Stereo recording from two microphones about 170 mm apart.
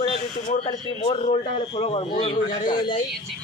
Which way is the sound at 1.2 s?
35° left (ahead or behind).